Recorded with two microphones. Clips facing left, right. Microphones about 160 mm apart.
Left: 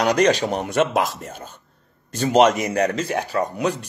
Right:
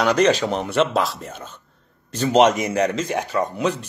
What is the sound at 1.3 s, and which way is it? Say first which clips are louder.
Speech: even; 10° left (ahead or behind).